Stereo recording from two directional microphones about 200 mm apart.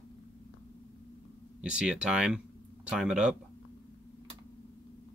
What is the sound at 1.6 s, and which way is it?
Speech, 5° right (ahead or behind).